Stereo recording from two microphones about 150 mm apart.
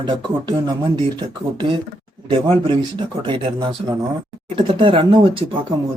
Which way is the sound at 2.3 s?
35° right (ahead or behind).